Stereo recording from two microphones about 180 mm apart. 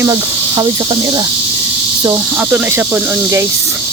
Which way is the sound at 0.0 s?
15° right (ahead or behind).